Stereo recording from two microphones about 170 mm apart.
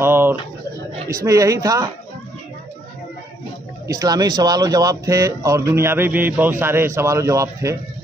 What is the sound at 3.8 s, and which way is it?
Speech, 20° right (ahead or behind).